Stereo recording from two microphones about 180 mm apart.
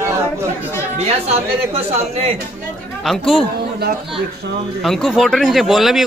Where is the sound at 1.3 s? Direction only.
35° right (ahead or behind).